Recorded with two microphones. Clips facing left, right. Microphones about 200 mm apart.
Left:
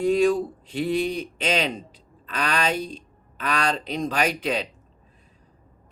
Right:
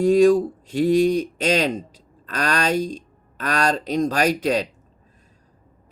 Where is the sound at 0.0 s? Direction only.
45° right (ahead or behind).